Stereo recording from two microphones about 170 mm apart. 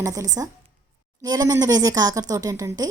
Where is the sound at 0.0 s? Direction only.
20° right (ahead or behind).